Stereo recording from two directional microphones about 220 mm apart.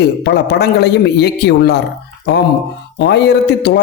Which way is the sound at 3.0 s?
50° left (ahead or behind).